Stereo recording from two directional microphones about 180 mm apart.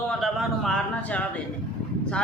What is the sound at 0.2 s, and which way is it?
A man's voice, centre (ahead or behind).